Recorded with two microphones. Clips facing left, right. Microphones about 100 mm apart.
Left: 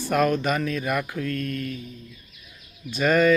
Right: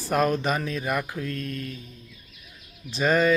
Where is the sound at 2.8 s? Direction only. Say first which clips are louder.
Left 2 dB; 30° right (ahead or behind).